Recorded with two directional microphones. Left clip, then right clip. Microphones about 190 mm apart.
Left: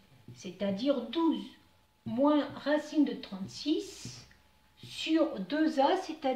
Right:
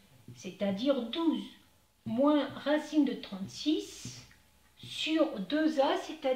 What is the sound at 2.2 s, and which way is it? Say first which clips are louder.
Speech: even; 15° left (ahead or behind).